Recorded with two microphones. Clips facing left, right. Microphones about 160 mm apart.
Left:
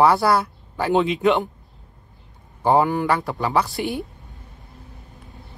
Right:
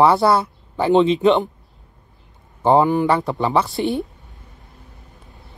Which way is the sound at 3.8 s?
Centre (ahead or behind).